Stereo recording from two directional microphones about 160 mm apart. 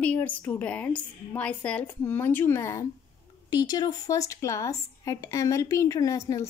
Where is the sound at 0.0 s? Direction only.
10° left (ahead or behind).